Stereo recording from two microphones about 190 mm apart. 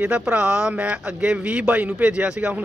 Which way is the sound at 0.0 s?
10° right (ahead or behind).